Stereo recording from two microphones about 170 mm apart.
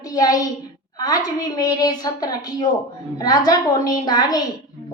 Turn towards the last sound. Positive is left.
turn(degrees=25)  # may be behind; listen again after turning